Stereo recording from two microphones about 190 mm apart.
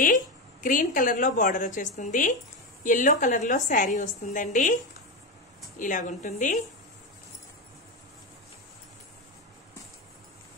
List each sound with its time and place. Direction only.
0.0 s a woman's voice: 45° left (ahead or behind)
5.8 s a woman's voice: 45° left (ahead or behind)